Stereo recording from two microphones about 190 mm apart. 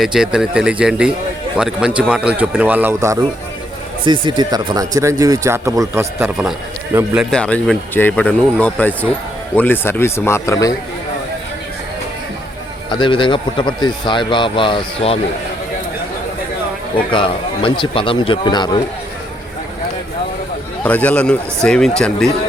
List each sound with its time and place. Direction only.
0.0 s speech: 5° right (ahead or behind)
4.0 s speech: 25° right (ahead or behind); by 7.3 s 10° right (ahead or behind)
7.3 s speech: 5° left (ahead or behind)
12.9 s speech: 25° left (ahead or behind)
17.1 s speech: 25° left (ahead or behind)
20.8 s speech: 10° left (ahead or behind)